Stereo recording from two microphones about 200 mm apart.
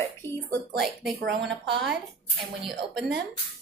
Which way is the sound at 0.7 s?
Centre (ahead or behind).